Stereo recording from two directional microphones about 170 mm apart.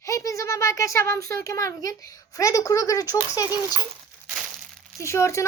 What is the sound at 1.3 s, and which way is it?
A woman's voice, 20° left (ahead or behind).